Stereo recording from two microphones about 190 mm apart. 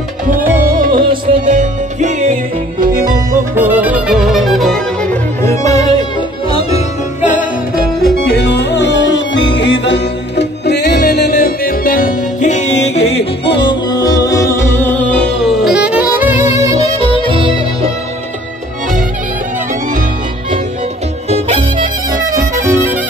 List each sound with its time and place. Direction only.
0.6 s music: 50° right (ahead or behind)
3.5 s music: 10° right (ahead or behind)
5.4 s music: 15° left (ahead or behind)
6.5 s music: 35° left (ahead or behind)
8.0 s music: 55° left (ahead or behind); by 16.3 s 10° right (ahead or behind)
16.6 s music: 25° right (ahead or behind)
21.3 s music: 35° right (ahead or behind)
22.6 s music: 15° right (ahead or behind)